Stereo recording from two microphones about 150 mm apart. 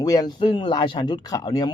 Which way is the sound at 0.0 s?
25° left (ahead or behind).